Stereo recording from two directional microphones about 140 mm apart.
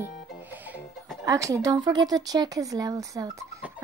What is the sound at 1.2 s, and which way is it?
Speech, 25° right (ahead or behind).